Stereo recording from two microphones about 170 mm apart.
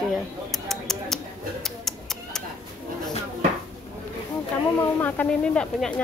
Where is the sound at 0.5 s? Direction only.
Centre (ahead or behind).